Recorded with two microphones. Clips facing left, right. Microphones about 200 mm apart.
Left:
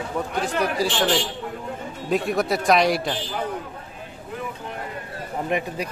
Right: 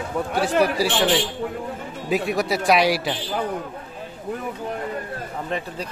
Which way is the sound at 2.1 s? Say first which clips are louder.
Even; centre (ahead or behind).